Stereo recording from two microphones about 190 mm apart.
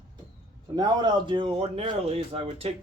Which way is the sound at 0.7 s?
20° right (ahead or behind).